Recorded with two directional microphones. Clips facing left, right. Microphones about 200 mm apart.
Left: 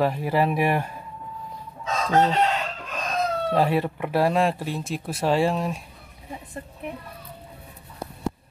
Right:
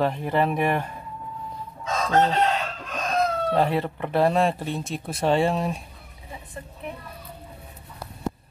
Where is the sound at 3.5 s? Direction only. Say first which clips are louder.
Left 1 dB; 5° left (ahead or behind).